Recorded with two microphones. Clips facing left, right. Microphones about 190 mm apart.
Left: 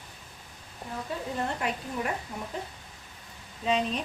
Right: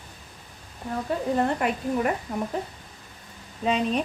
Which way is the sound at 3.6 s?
55° right (ahead or behind).